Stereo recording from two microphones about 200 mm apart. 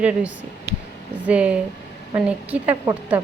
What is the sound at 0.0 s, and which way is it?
A woman's voice, 5° right (ahead or behind).